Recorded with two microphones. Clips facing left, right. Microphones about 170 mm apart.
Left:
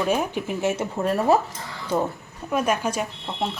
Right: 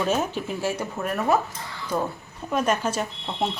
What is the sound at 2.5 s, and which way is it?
Speech, 10° left (ahead or behind).